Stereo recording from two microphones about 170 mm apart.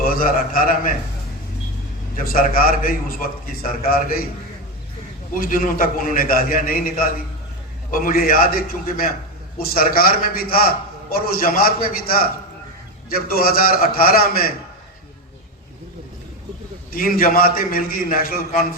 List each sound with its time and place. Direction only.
0.0 s a man's voice: 55° left (ahead or behind)
2.1 s a man's voice: 55° left (ahead or behind)
5.3 s a man's voice: 55° left (ahead or behind)
16.9 s a man's voice: 55° left (ahead or behind)